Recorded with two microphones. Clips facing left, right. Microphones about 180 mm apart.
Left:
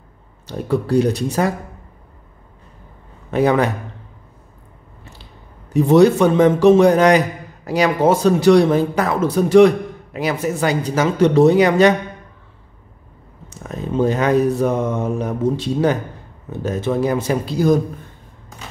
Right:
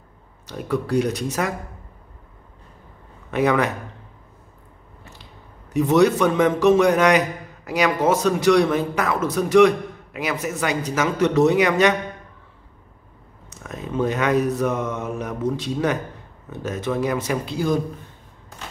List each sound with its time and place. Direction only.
0.5 s a man's voice: 30° left (ahead or behind)
3.3 s a man's voice: 30° left (ahead or behind)
5.2 s a man's voice: 30° left (ahead or behind)
13.5 s a man's voice: 30° left (ahead or behind)